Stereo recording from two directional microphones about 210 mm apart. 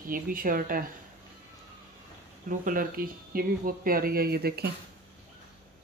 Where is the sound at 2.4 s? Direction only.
40° right (ahead or behind).